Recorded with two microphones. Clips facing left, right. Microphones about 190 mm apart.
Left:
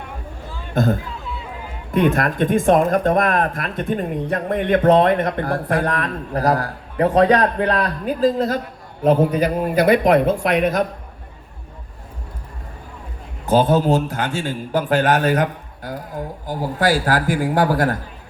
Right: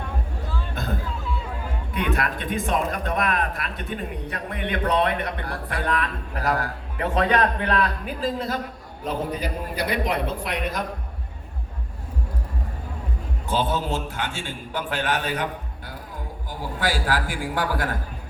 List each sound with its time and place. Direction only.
0.7 s speech: 45° left (ahead or behind)
9.0 s a man's voice: 55° left (ahead or behind)
10.4 s speech: 80° left
13.5 s speech: 45° left (ahead or behind)